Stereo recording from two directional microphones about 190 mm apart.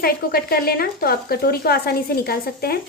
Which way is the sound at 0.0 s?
50° left (ahead or behind).